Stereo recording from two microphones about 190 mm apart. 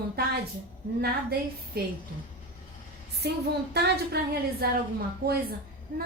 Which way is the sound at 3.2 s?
60° right (ahead or behind).